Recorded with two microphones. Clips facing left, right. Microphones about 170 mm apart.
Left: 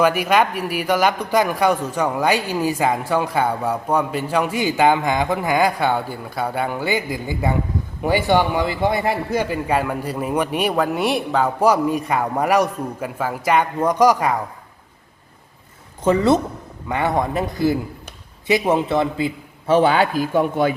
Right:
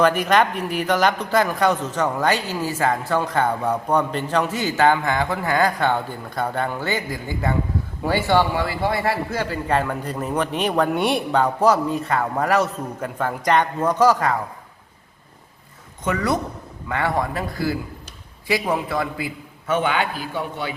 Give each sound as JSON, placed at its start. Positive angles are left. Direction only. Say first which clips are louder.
{"t": 0.0, "sound": "a man's voice", "louder": "left 1 dB", "side_deg": 10}
{"t": 16.0, "sound": "a man's voice", "louder": "left 6 dB", "side_deg": 25}